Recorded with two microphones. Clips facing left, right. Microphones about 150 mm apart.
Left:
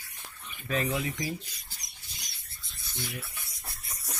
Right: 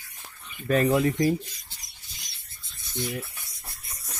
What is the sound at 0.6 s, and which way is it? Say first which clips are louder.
Speech: right 9 dB; 50° right (ahead or behind).